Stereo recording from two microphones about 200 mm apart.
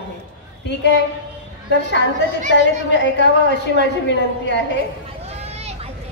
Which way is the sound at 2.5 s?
60° left (ahead or behind).